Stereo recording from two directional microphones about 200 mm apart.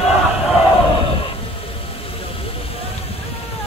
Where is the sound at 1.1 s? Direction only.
30° left (ahead or behind).